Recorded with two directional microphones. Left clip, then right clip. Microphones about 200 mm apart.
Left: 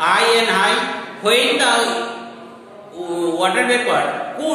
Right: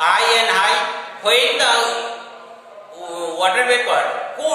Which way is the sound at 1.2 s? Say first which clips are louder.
Even; centre (ahead or behind).